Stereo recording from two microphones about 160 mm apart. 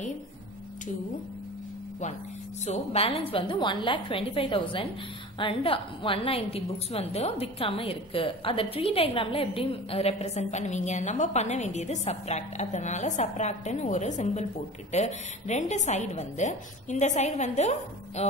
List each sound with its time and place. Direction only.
2.6 s a woman's voice: 40° left (ahead or behind)